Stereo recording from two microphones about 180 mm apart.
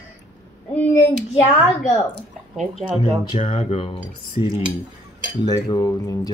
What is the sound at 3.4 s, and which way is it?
Speech, 30° left (ahead or behind).